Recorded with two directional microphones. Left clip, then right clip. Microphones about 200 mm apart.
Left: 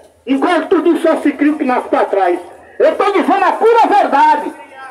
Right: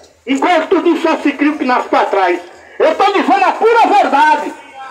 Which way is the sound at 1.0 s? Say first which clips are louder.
Left 1 dB; 20° left (ahead or behind).